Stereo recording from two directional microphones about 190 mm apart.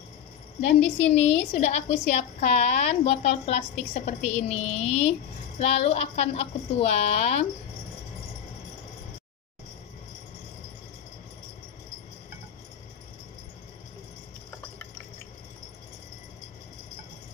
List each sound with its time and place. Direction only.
0.6 s a woman's voice: 35° left (ahead or behind)